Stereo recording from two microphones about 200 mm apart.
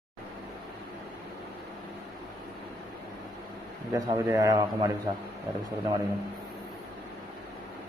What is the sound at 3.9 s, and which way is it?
A man's voice, 15° right (ahead or behind).